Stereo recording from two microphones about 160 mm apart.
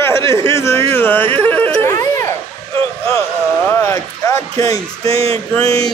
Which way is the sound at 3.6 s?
15° left (ahead or behind).